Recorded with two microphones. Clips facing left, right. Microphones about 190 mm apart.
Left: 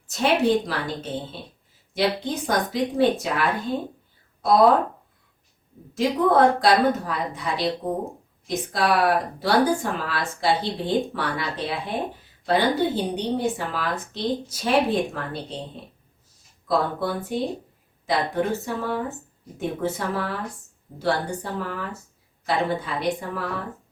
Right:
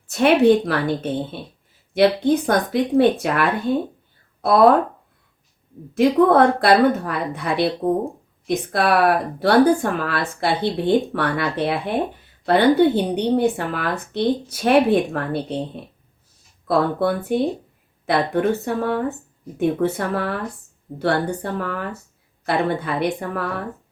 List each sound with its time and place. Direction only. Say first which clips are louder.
0.1 s speech: right 6 dB; 60° right (ahead or behind)
5.9 s speech: right 6 dB; 60° right (ahead or behind)